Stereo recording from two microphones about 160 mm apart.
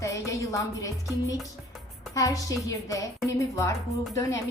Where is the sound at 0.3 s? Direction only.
20° left (ahead or behind).